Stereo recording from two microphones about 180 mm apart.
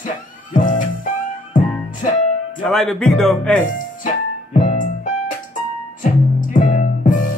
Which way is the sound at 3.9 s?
45° left (ahead or behind).